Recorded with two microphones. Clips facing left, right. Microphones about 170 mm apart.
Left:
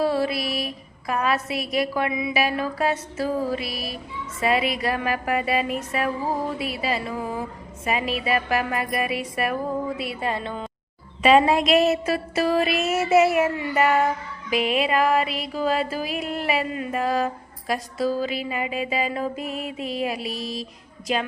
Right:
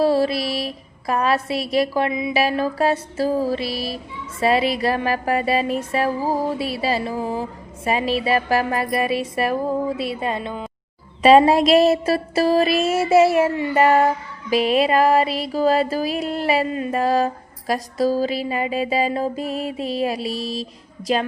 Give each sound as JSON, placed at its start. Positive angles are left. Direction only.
{"t": 0.0, "sound": "music", "side_deg": -35}
{"t": 11.2, "sound": "music", "side_deg": -35}